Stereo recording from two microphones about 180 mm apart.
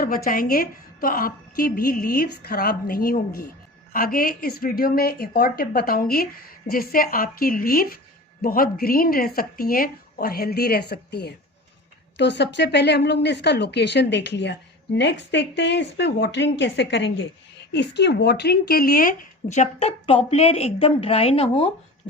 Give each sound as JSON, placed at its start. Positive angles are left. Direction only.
{"t": 0.0, "sound": "a woman's voice", "side_deg": 55}